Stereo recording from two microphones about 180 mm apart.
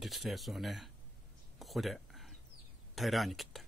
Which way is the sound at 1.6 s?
Centre (ahead or behind).